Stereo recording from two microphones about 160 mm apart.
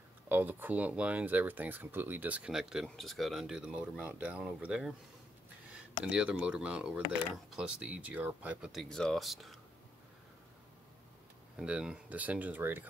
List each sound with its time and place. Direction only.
0.3 s speech: 10° right (ahead or behind)
6.0 s speech: 10° right (ahead or behind)
11.5 s speech: 5° right (ahead or behind)